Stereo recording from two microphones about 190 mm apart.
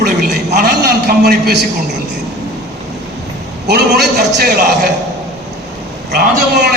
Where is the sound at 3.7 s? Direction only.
60° right (ahead or behind).